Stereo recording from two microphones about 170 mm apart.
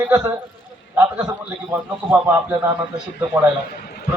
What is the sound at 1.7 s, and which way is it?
A man's voice, 10° right (ahead or behind).